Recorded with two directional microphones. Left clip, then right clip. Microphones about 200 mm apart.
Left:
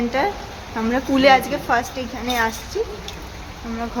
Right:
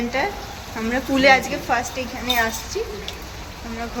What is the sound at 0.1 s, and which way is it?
A woman's voice, 25° left (ahead or behind).